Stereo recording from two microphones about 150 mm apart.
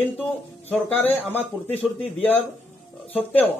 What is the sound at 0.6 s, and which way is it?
Speech, 10° left (ahead or behind).